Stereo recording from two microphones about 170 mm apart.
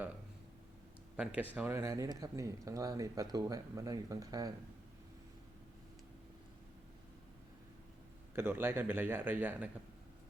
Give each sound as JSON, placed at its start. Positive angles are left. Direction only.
{"t": 1.1, "sound": "speech", "side_deg": -5}
{"t": 8.4, "sound": "speech", "side_deg": -15}